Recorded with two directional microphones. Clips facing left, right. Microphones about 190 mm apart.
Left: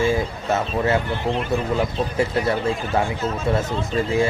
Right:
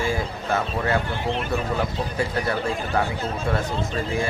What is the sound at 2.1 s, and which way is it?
Speech, 25° left (ahead or behind).